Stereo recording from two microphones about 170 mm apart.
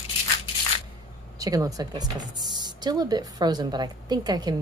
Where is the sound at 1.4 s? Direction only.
20° right (ahead or behind).